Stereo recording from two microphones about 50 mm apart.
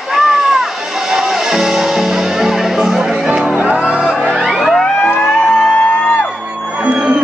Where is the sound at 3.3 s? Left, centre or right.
Right.